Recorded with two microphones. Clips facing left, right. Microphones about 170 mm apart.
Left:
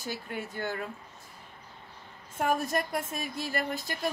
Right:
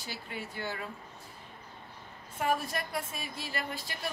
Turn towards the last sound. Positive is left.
turn(degrees=45)  # may be behind; listen again after turning